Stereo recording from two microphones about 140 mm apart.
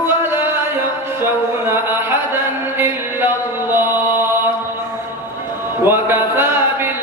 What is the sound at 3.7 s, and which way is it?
Chant, 15° right (ahead or behind).